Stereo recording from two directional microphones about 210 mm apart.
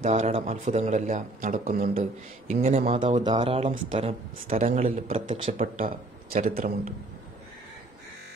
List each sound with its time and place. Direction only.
0.0 s a man's voice: 35° right (ahead or behind)